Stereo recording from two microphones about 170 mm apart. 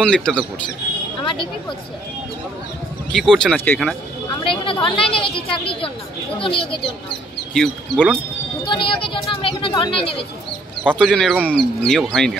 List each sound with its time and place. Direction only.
0.0 s speech: 5° left (ahead or behind)
1.2 s speech: 30° left (ahead or behind)
3.1 s speech: 5° left (ahead or behind)
4.4 s speech: 30° left (ahead or behind)
7.5 s speech: 5° left (ahead or behind)
8.6 s speech: 30° left (ahead or behind)
10.8 s speech: 5° left (ahead or behind)